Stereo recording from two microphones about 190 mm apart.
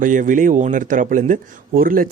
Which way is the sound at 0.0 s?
45° right (ahead or behind).